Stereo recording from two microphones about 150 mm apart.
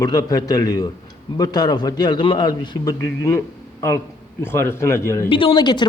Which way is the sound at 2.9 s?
20° left (ahead or behind).